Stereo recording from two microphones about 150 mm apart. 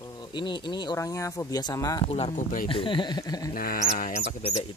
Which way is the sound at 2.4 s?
60° left (ahead or behind).